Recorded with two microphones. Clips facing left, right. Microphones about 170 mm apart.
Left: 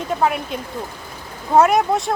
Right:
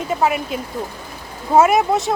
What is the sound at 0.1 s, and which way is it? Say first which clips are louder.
Speech: right 1 dB; 5° right (ahead or behind).